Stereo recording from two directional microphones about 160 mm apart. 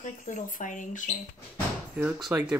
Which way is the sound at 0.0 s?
55° left (ahead or behind).